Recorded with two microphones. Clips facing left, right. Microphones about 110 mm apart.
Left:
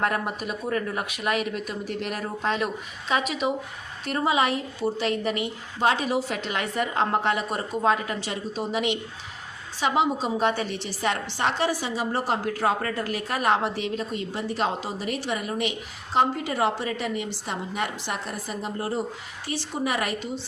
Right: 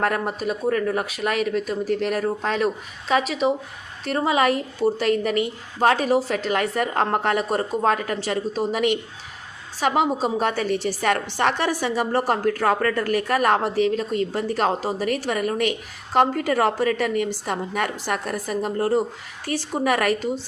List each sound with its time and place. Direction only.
0.0 s a woman's voice: 40° right (ahead or behind)